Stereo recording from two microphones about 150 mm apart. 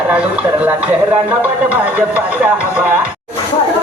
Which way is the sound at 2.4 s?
10° right (ahead or behind).